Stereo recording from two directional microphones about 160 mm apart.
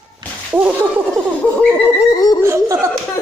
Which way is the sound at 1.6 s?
5° left (ahead or behind).